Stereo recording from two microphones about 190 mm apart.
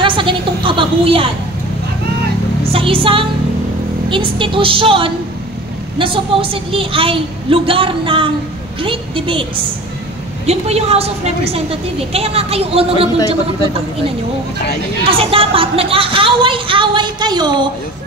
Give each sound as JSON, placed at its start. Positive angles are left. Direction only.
{"t": 0.0, "sound": "a sound", "side_deg": -25}
{"t": 2.7, "sound": "a woman's voice", "side_deg": -30}
{"t": 15.0, "sound": "a woman's voice", "side_deg": -30}